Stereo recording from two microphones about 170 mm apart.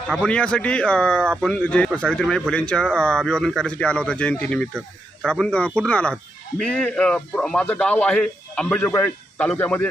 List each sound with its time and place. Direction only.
0.1 s a man's voice: 5° left (ahead or behind)